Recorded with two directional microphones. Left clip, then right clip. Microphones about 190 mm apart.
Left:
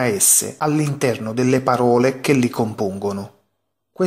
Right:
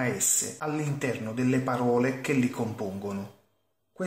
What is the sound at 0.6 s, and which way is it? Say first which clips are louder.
A man's voice: left 11 dB; 35° left (ahead or behind).